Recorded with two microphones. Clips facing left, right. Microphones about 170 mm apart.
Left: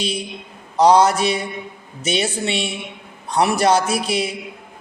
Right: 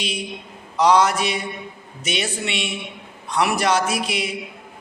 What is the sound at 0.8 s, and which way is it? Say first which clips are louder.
A man's voice: left 3 dB; 30° left (ahead or behind).